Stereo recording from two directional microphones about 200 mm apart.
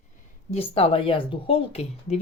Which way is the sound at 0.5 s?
30° left (ahead or behind).